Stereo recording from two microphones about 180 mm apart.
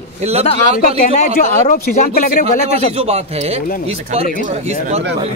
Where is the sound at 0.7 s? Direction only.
50° left (ahead or behind).